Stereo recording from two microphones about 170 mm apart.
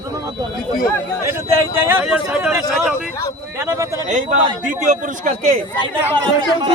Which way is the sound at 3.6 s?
20° right (ahead or behind).